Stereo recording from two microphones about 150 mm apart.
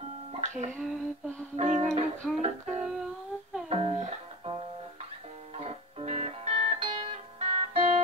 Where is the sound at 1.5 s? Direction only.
50° right (ahead or behind).